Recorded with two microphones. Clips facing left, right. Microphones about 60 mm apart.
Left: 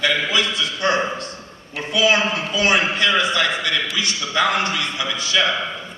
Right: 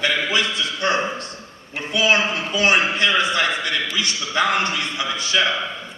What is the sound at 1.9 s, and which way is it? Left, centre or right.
A man's voice, right.